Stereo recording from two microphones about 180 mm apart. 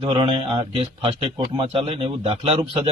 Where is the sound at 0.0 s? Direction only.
25° right (ahead or behind).